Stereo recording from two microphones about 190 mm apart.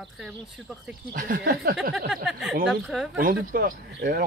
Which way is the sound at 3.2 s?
50° right (ahead or behind).